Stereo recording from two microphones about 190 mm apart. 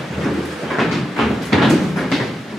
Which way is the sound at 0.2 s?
Centre (ahead or behind).